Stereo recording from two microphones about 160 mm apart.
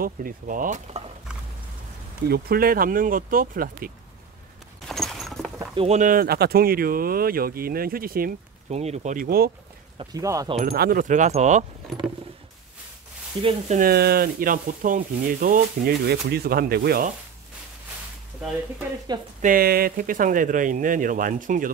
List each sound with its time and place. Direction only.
0.0 s speech: 60° right (ahead or behind); by 1.0 s 45° right (ahead or behind)
2.2 s speech: 75° right (ahead or behind)
4.8 s walk: centre (ahead or behind)
5.8 s speech: 45° right (ahead or behind); by 8.3 s 65° right (ahead or behind)
8.6 s speech: 45° right (ahead or behind); by 9.5 s 65° right (ahead or behind)
10.1 s speech: 20° right (ahead or behind)
10.6 s speech: 70° right (ahead or behind); by 11.6 s 50° right (ahead or behind)
13.4 s speech: 35° right (ahead or behind)
13.7 s speech: 75° right (ahead or behind)
19.1 s speech: 25° right (ahead or behind)
19.4 s speech: 65° right (ahead or behind)